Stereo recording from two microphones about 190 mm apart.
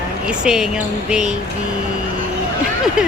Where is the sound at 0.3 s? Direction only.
5° right (ahead or behind).